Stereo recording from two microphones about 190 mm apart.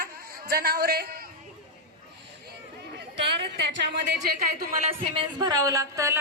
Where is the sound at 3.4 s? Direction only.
65° right (ahead or behind).